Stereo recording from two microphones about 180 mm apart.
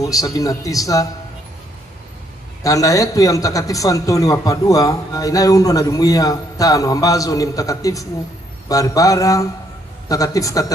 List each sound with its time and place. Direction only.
0.0 s a man's voice: 20° left (ahead or behind)
2.6 s a man's voice: 20° left (ahead or behind)